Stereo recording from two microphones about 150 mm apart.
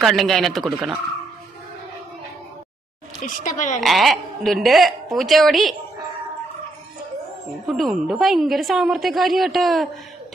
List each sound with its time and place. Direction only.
0.0 s a woman's voice: centre (ahead or behind)
3.2 s speech: 60° left (ahead or behind)
3.8 s a woman's voice: centre (ahead or behind)
7.7 s a woman's voice: centre (ahead or behind)